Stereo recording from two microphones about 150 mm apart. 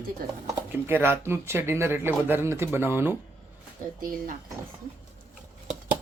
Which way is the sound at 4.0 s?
70° right (ahead or behind).